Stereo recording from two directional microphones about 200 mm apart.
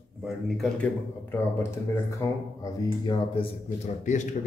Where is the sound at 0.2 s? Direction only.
Centre (ahead or behind); by 3.4 s 20° left (ahead or behind).